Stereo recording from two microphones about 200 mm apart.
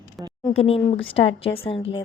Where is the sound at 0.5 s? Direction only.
30° left (ahead or behind).